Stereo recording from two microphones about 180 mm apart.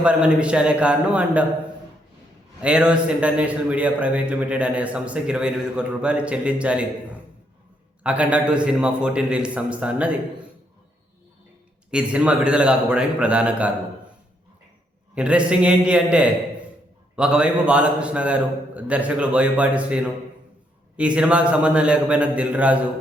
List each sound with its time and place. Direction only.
0.0 s a man's voice: 5° right (ahead or behind)
2.6 s a man's voice: 5° right (ahead or behind)
11.9 s a man's voice: 5° right (ahead or behind)
15.1 s a man's voice: 5° right (ahead or behind)